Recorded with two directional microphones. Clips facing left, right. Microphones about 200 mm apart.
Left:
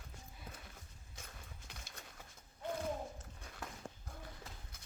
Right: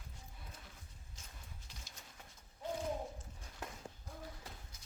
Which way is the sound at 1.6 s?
55° left (ahead or behind).